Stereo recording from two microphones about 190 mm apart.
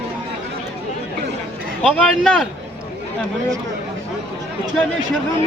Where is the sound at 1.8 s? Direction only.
5° left (ahead or behind).